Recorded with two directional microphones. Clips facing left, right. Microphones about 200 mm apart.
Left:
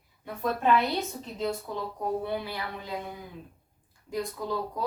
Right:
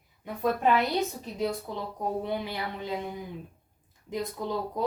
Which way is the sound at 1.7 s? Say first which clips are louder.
Left 1 dB; 20° right (ahead or behind).